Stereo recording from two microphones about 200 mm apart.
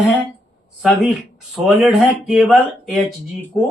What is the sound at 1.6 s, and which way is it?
Speech, centre (ahead or behind).